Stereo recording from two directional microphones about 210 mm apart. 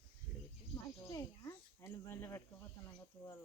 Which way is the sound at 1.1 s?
15° left (ahead or behind).